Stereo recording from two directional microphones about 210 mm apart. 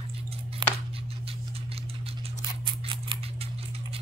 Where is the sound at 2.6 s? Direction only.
25° right (ahead or behind).